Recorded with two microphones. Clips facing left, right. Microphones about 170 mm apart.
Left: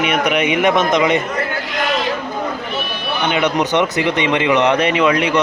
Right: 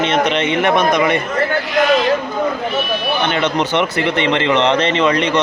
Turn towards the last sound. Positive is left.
turn(degrees=5)  # may be behind; listen again after turning